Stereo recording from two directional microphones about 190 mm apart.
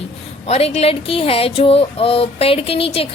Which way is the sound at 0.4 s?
35° left (ahead or behind).